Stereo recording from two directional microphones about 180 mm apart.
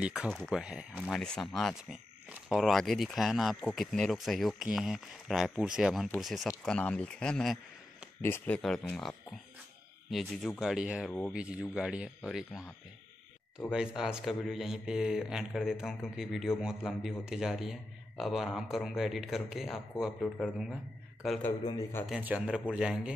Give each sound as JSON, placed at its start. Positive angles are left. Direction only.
{"t": 0.0, "sound": "speech", "side_deg": -5}
{"t": 11.1, "sound": "speech", "side_deg": 5}
{"t": 11.3, "sound": "speech", "side_deg": -5}
{"t": 13.7, "sound": "speech", "side_deg": -5}
{"t": 21.6, "sound": "speech", "side_deg": 20}
{"t": 22.0, "sound": "speech", "side_deg": -5}